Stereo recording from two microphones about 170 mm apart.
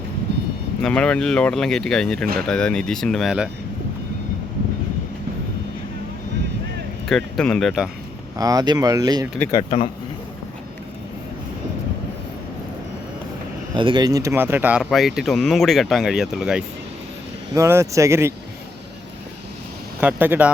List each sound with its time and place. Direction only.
0.8 s speech: 5° left (ahead or behind)
7.1 s speech: 5° left (ahead or behind)
8.4 s speech: 20° right (ahead or behind)
9.4 s speech: 15° left (ahead or behind)
13.7 s speech: 30° right (ahead or behind); by 16.6 s 5° right (ahead or behind)
17.5 s speech: 15° right (ahead or behind)
20.0 s speech: 10° right (ahead or behind)